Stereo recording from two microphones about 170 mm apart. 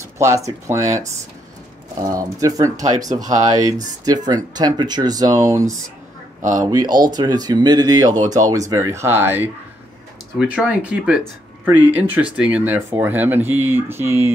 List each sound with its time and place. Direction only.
0.2 s speech: 20° right (ahead or behind)
2.1 s speech: 20° right (ahead or behind)
6.4 s speech: 50° right (ahead or behind)
6.8 s speech: 25° right (ahead or behind)